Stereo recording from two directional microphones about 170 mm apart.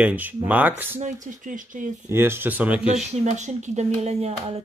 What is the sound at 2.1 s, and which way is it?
Speech, 15° right (ahead or behind).